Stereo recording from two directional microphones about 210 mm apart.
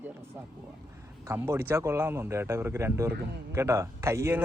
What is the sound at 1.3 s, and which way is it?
Speech, 10° right (ahead or behind).